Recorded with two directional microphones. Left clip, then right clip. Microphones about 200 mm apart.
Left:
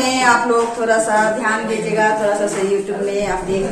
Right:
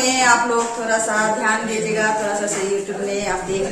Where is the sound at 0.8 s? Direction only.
Centre (ahead or behind).